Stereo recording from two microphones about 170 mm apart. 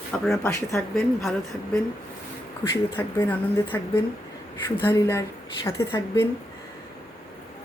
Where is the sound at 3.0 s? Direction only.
10° left (ahead or behind).